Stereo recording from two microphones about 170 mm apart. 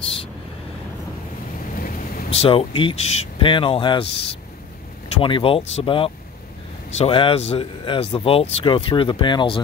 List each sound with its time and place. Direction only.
1.8 s vehicle: 55° left (ahead or behind)
2.3 s speech: 35° left (ahead or behind)